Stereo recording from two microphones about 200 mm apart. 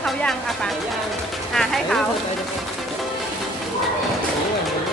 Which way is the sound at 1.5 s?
Centre (ahead or behind).